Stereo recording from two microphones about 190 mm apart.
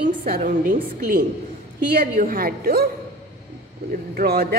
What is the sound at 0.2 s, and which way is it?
A woman's voice, 45° right (ahead or behind).